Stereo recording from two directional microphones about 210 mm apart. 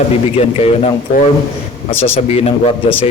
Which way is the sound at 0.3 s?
30° left (ahead or behind).